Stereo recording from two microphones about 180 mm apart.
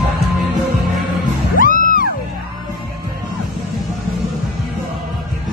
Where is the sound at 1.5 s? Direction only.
50° left (ahead or behind).